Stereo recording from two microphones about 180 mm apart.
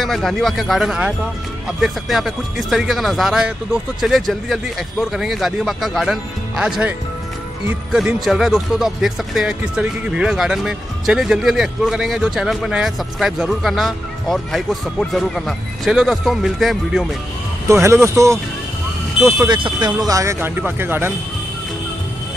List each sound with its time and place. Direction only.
0.0 s speech: centre (ahead or behind)
17.6 s speech: 15° right (ahead or behind)
19.4 s speech: 25° right (ahead or behind)